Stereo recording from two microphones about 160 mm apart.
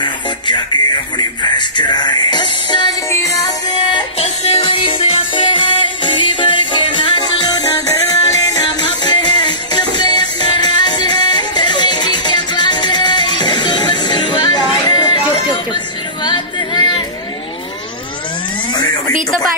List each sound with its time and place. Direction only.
0.0 s music: 30° left (ahead or behind)
3.1 s music: 20° left (ahead or behind)
4.4 s music: 40° left (ahead or behind)
9.0 s music: 30° left (ahead or behind)
16.3 s yodeling: 30° left (ahead or behind)